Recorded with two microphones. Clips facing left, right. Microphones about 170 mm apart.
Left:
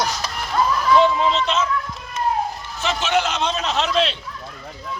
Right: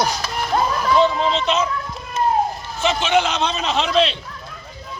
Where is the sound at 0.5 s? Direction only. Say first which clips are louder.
Right 1 dB; 35° right (ahead or behind).